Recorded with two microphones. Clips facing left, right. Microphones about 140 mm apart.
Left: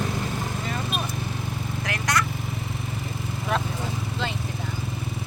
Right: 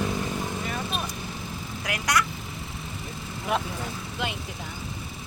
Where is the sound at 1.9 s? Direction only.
10° right (ahead or behind).